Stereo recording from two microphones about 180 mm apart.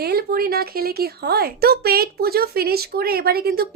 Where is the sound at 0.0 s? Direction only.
60° right (ahead or behind).